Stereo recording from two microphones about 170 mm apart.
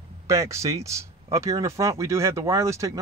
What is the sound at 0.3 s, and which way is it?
Speech, 20° right (ahead or behind).